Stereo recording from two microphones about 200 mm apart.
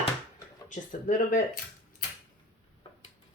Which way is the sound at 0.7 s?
40° left (ahead or behind).